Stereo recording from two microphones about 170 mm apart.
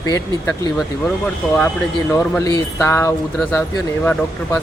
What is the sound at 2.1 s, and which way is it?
Speech, 20° left (ahead or behind).